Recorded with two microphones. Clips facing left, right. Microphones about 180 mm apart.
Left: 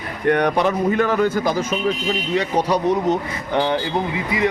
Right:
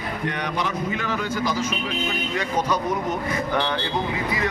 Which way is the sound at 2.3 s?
35° left (ahead or behind).